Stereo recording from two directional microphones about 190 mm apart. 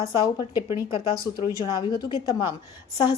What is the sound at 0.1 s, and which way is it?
A woman's voice, 25° left (ahead or behind).